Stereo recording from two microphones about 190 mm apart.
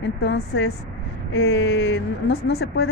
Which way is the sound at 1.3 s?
90° left.